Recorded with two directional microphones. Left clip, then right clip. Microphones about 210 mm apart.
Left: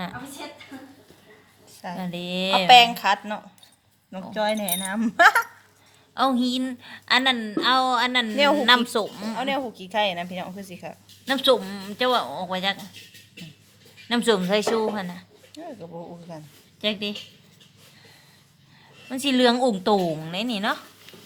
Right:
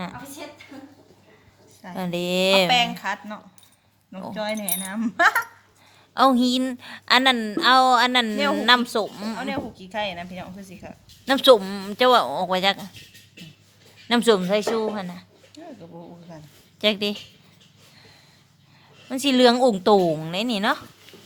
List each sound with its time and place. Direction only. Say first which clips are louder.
2.0 s a woman's voice: right 7 dB; 25° right (ahead or behind)
2.6 s speech: left 7 dB; 35° left (ahead or behind)
6.1 s a woman's voice: right 4 dB; 30° right (ahead or behind)
8.6 s a woman's voice: even; 15° right (ahead or behind)
9.4 s speech: left 5 dB; 35° left (ahead or behind)
11.3 s speech: right 5 dB; 30° right (ahead or behind)
14.1 s a woman's voice: right 3 dB; 25° right (ahead or behind)
14.3 s a woman's voice: even; 10° right (ahead or behind)
15.5 s speech: left 4 dB; 35° left (ahead or behind)
16.8 s speech: right 5 dB; 35° right (ahead or behind)
19.0 s a woman's voice: right 3 dB; 20° right (ahead or behind)